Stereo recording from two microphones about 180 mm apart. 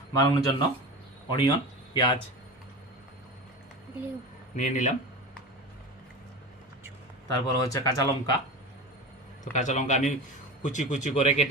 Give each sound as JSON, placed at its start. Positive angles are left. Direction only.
{"t": 0.1, "sound": "speech", "side_deg": 20}
{"t": 4.5, "sound": "a man's voice", "side_deg": 45}
{"t": 7.3, "sound": "speech", "side_deg": 20}
{"t": 9.4, "sound": "a man's voice", "side_deg": 45}